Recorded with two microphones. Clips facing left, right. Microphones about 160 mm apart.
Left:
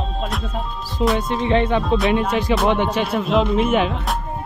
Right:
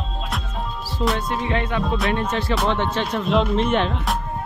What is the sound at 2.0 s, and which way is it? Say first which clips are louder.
Speech: left 4 dB; 15° left (ahead or behind).